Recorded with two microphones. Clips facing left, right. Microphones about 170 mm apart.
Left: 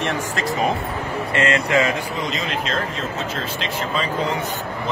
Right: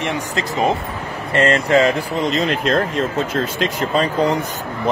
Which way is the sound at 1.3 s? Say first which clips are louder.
Right 5 dB; 35° right (ahead or behind).